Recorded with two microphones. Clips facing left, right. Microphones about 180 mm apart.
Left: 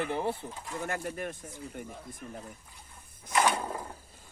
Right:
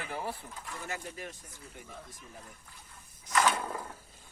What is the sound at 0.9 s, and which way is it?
Speech, 55° left (ahead or behind).